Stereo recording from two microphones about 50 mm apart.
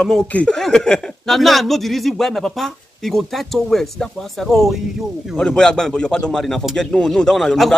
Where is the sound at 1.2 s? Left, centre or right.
Centre.